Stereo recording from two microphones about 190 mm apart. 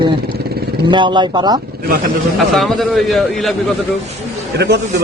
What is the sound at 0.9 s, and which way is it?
Speech, 25° right (ahead or behind).